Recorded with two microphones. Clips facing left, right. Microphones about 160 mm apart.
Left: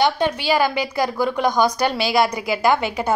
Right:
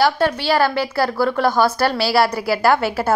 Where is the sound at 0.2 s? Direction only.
15° left (ahead or behind).